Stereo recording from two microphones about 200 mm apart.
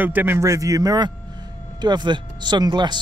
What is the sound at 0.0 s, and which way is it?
A man's voice, 10° right (ahead or behind).